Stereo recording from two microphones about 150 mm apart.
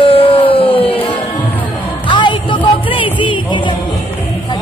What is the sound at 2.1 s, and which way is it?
Music, 35° left (ahead or behind).